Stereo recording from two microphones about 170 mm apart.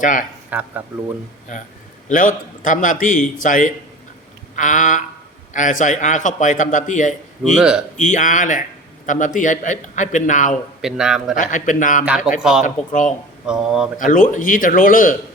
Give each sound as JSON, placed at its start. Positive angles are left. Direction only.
{"t": 0.0, "sound": "a man's voice", "side_deg": 50}
{"t": 0.5, "sound": "speech", "side_deg": -10}
{"t": 2.0, "sound": "a man's voice", "side_deg": 50}
{"t": 7.5, "sound": "a man's voice", "side_deg": -5}
{"t": 7.9, "sound": "a man's voice", "side_deg": 45}
{"t": 10.8, "sound": "a man's voice", "side_deg": -5}
{"t": 11.3, "sound": "a man's voice", "side_deg": 50}
{"t": 12.0, "sound": "a man's voice", "side_deg": -5}
{"t": 12.6, "sound": "a man's voice", "side_deg": 45}
{"t": 13.5, "sound": "a man's voice", "side_deg": -5}
{"t": 14.0, "sound": "a man's voice", "side_deg": 50}